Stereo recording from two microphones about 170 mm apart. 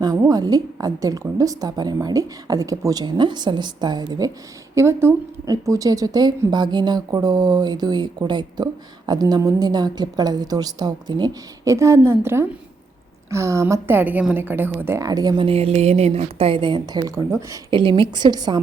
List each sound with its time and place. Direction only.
0.0 s a woman's voice: 20° right (ahead or behind)